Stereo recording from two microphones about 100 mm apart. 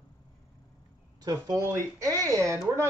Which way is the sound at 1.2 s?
35° right (ahead or behind).